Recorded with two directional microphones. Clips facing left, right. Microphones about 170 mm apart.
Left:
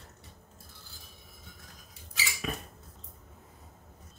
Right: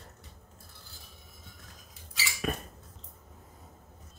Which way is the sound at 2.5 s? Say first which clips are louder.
Right 4 dB; 50° right (ahead or behind).